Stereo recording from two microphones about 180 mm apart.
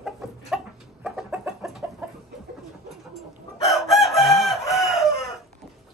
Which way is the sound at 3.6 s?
Centre (ahead or behind).